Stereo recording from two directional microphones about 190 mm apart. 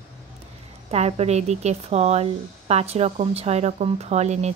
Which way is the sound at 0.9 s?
35° right (ahead or behind).